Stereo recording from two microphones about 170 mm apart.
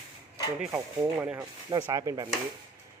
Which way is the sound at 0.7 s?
20° right (ahead or behind).